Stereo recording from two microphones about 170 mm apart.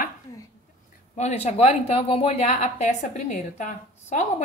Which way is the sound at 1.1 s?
40° left (ahead or behind).